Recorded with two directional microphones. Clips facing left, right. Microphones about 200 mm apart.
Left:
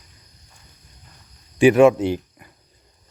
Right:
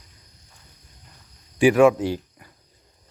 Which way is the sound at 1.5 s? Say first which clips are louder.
Left 3 dB; 25° left (ahead or behind).